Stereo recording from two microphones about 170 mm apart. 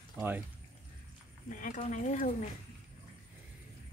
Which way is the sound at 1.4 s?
50° left (ahead or behind).